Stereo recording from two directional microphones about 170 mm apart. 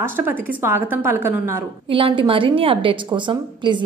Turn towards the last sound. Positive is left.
turn(degrees=-25)  # may be behind; listen again after turning